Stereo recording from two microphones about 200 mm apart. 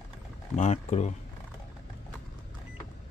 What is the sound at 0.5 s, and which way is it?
Speech, 35° left (ahead or behind).